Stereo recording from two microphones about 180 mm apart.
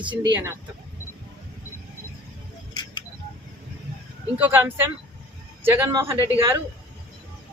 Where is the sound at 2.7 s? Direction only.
25° left (ahead or behind).